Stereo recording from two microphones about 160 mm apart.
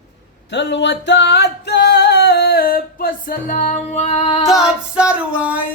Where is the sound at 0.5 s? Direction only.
90° left; by 4.2 s 45° left (ahead or behind).